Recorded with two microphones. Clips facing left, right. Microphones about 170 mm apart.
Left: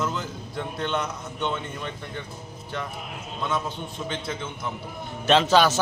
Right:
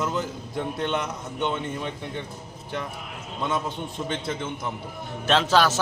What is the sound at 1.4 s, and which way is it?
Speech, 20° right (ahead or behind).